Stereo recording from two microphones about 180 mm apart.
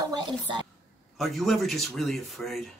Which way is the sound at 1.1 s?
Centre (ahead or behind).